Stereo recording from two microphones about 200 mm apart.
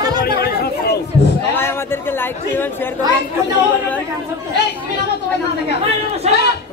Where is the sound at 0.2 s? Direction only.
50° left (ahead or behind).